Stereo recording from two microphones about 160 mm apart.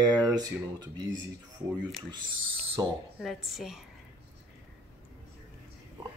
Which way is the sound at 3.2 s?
Centre (ahead or behind).